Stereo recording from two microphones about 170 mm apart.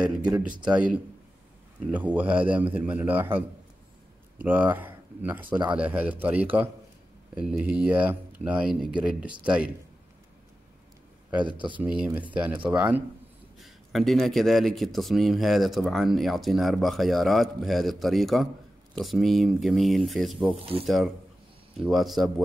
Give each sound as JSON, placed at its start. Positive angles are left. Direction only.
{"t": 0.0, "sound": "speech", "side_deg": -5}
{"t": 1.9, "sound": "speech", "side_deg": -10}
{"t": 11.2, "sound": "speech", "side_deg": -10}
{"t": 11.5, "sound": "speech", "side_deg": -30}
{"t": 11.8, "sound": "speech", "side_deg": -5}
{"t": 13.6, "sound": "speech", "side_deg": 0}